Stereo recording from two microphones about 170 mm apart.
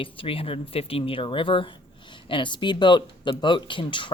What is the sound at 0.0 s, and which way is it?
Speech, 30° left (ahead or behind).